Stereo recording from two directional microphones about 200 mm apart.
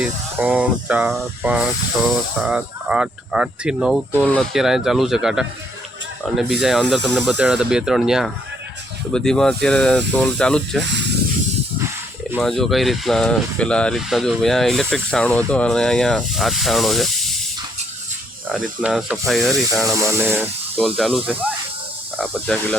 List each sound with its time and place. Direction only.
0.0 s speech: 5° right (ahead or behind)
10.8 s speech: 60° right (ahead or behind)
12.4 s speech: centre (ahead or behind)
18.5 s speech: 5° right (ahead or behind)
22.2 s speech: centre (ahead or behind)